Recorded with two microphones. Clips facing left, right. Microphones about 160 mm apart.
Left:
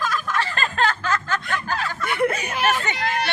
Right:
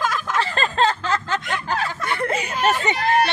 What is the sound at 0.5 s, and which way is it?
Snicker, 25° right (ahead or behind).